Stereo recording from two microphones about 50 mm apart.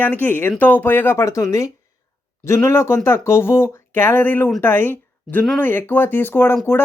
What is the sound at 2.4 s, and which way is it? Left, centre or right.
Speech, left.